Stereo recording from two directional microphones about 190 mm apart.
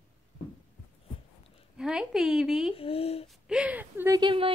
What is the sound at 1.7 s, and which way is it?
Speech, 5° right (ahead or behind).